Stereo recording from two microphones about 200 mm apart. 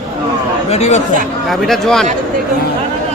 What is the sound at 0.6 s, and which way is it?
Speech, 35° left (ahead or behind).